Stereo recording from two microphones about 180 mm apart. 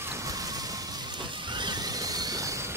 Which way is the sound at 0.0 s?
15° right (ahead or behind).